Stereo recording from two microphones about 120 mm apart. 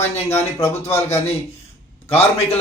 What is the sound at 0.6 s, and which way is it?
A man's voice, 60° left (ahead or behind).